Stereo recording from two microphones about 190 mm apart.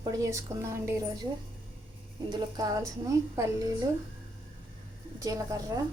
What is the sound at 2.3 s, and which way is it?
A woman's voice, 20° right (ahead or behind).